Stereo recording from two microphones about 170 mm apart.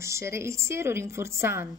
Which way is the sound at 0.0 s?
15° right (ahead or behind).